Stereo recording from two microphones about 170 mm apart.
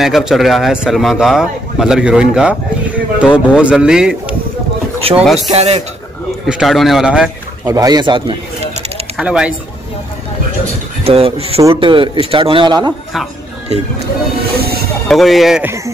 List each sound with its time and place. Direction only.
0.0 s a man's voice: centre (ahead or behind)
5.5 s speech: 35° right (ahead or behind)
6.4 s a man's voice: centre (ahead or behind)
7.6 s speech: 20° right (ahead or behind)
9.1 s speech: 5° right (ahead or behind)
11.1 s speech: 35° right (ahead or behind)
14.6 s a sound: 65° right (ahead or behind)
15.0 s a man's voice: centre (ahead or behind)